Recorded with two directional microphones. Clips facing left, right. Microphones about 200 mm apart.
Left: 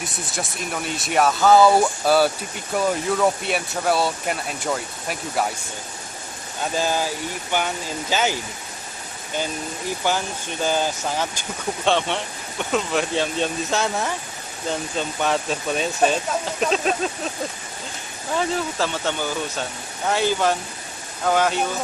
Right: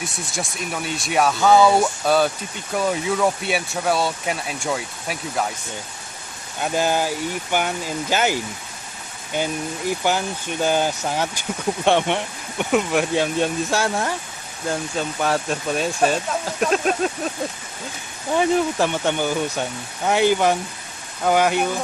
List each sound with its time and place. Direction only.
0.3 s speech: centre (ahead or behind)
6.6 s speech: 15° right (ahead or behind)
10.0 s speech: 15° right (ahead or behind)
18.4 s speech: 15° right (ahead or behind)